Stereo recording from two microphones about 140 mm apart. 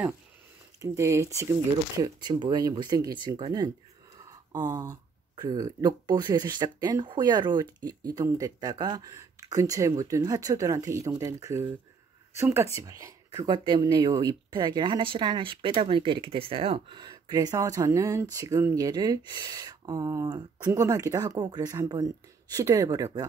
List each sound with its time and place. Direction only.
0.7 s speech: 20° right (ahead or behind)
4.5 s speech: 25° right (ahead or behind)